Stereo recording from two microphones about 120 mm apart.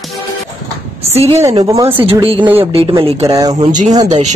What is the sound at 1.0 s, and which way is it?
Speech, 60° right (ahead or behind).